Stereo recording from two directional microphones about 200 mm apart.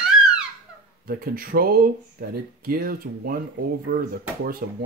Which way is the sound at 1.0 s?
45° right (ahead or behind).